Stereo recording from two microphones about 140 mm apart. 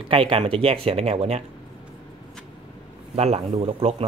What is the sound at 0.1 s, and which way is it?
Speech, 40° right (ahead or behind).